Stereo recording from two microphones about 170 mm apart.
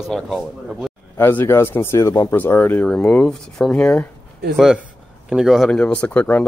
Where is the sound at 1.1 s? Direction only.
15° left (ahead or behind).